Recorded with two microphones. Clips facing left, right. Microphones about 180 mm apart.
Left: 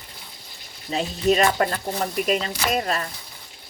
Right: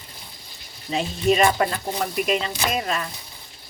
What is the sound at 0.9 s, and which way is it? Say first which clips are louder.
Speech: even; 40° left (ahead or behind).